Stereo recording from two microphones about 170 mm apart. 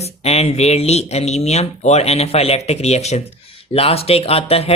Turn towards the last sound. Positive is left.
turn(degrees=35)  # may be behind; listen again after turning